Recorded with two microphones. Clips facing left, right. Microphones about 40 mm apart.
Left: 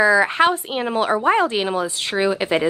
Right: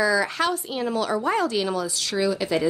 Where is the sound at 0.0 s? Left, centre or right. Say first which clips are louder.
Left 7 dB; left.